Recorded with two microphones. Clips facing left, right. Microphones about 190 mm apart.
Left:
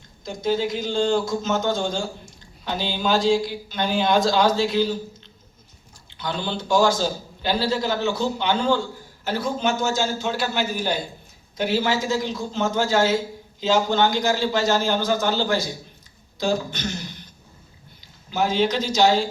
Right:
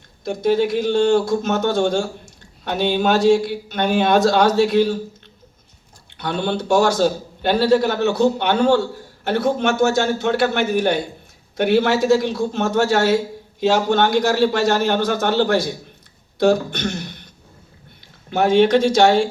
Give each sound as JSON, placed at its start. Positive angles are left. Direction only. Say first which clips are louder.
{"t": 0.3, "sound": "a man's voice", "louder": "right 6 dB", "side_deg": -65}
{"t": 6.1, "sound": "a man's voice", "louder": "right 6 dB", "side_deg": -65}